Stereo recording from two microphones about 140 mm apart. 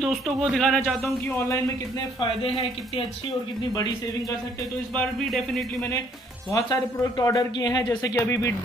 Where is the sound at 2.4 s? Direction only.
40° left (ahead or behind).